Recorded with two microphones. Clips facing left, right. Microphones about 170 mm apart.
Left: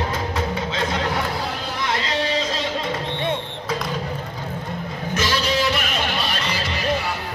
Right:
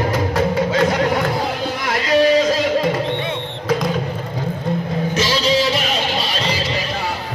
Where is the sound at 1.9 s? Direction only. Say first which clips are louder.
Right 10 dB; 25° left (ahead or behind).